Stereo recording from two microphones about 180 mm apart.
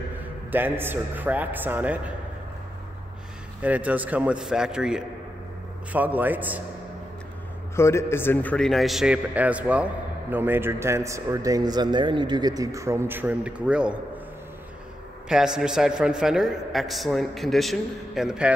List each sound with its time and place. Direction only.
0.2 s speech: 10° right (ahead or behind)
3.6 s speech: 10° right (ahead or behind)
7.7 s a man's voice: 15° left (ahead or behind); by 14.2 s 5° right (ahead or behind)
15.2 s a man's voice: 5° right (ahead or behind)